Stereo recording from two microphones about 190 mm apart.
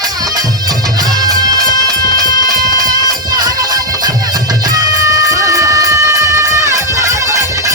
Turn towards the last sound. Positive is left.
turn(degrees=-15)  # may be behind; listen again after turning